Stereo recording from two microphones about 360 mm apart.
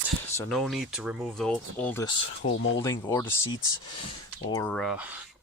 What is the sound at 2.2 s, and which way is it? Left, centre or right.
Speech, left.